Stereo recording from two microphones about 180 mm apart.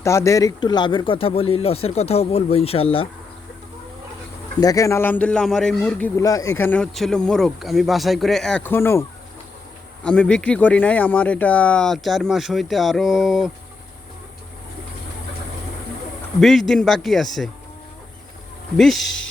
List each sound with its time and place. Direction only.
0.0 s speech: 15° left (ahead or behind); by 3.1 s 30° left (ahead or behind)
4.6 s speech: 20° left (ahead or behind); by 6.1 s 5° left (ahead or behind)
6.1 s speech: 20° left (ahead or behind)
6.6 s speech: 10° left (ahead or behind)
16.4 s speech: centre (ahead or behind)
18.8 s speech: centre (ahead or behind)